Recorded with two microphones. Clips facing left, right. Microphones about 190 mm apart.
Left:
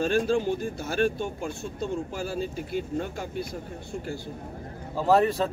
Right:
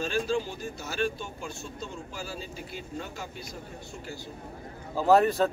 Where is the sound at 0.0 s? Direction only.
55° left (ahead or behind).